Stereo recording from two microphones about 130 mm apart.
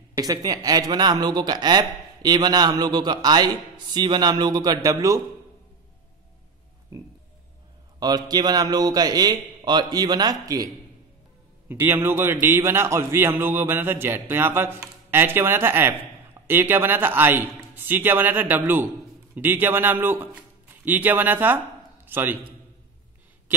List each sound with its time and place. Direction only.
0.1 s speech: 30° right (ahead or behind)
6.9 s a sound: 25° right (ahead or behind)
8.0 s speech: 30° right (ahead or behind)
11.8 s a man's voice: 15° right (ahead or behind)